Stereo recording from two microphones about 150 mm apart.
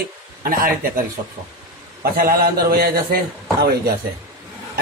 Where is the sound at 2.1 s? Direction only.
85° right.